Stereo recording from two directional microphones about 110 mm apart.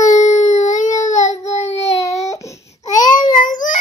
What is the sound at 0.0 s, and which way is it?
Child singing, 90° left.